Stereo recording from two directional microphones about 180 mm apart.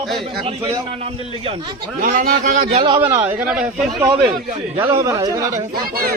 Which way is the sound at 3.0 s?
15° right (ahead or behind).